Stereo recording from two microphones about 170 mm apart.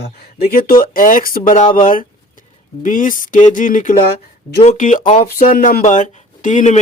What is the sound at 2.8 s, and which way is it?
Speech, 50° left (ahead or behind).